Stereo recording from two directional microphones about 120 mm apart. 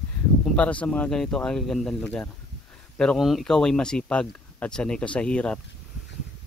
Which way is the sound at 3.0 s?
Centre (ahead or behind).